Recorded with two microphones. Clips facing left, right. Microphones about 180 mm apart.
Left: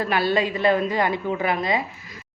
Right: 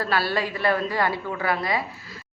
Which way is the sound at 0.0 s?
20° left (ahead or behind).